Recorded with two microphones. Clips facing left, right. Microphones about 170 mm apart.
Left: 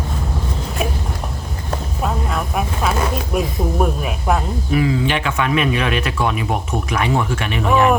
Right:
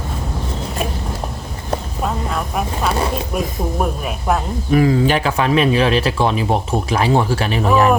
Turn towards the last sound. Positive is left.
turn(degrees=-35)  # may be behind; listen again after turning